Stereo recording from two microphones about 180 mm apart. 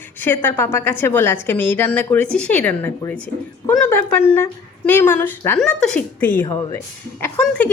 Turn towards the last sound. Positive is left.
turn(degrees=5)  # may be behind; listen again after turning